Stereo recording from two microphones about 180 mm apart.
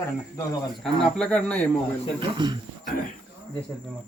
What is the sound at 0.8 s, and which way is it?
Speech, 5° left (ahead or behind).